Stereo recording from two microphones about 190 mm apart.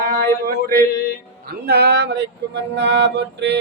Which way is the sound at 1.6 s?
60° right (ahead or behind).